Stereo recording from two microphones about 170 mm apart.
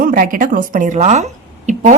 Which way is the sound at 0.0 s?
55° right (ahead or behind).